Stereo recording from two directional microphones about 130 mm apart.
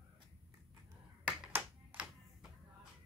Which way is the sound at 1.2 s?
10° right (ahead or behind).